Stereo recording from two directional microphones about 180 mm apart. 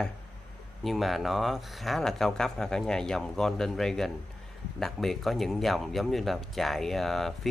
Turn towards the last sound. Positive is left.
turn(degrees=0)  # may be behind; listen again after turning